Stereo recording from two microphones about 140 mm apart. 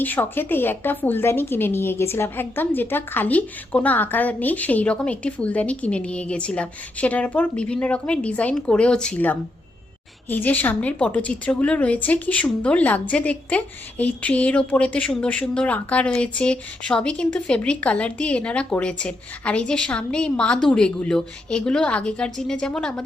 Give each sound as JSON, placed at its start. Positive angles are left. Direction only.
{"t": 0.0, "sound": "a woman's voice", "side_deg": 10}